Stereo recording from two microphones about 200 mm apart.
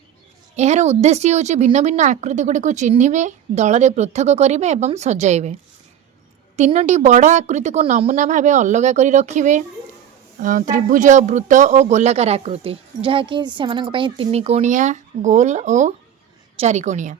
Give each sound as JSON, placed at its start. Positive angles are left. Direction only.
{"t": 0.5, "sound": "speech", "side_deg": -35}
{"t": 6.6, "sound": "speech", "side_deg": -35}